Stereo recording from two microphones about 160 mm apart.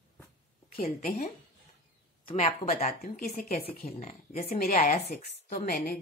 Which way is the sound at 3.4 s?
45° left (ahead or behind).